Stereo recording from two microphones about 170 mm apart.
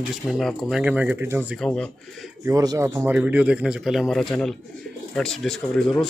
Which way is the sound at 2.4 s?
20° right (ahead or behind).